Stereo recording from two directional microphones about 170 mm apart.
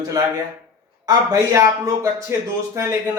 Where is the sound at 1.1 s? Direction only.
20° right (ahead or behind).